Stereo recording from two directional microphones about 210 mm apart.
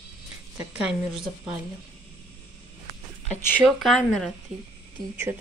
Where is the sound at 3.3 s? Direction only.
10° left (ahead or behind).